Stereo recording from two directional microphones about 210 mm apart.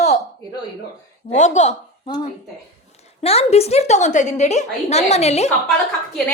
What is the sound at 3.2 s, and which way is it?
A woman's voice, 30° left (ahead or behind).